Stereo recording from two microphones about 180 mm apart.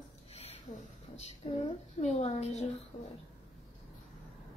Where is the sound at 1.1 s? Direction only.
35° left (ahead or behind).